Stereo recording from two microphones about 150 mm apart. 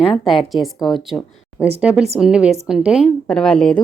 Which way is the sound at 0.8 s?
30° left (ahead or behind).